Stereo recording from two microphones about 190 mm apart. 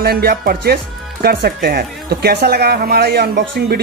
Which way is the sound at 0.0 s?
55° right (ahead or behind).